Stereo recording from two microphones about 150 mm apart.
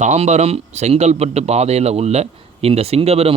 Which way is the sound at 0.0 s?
50° right (ahead or behind).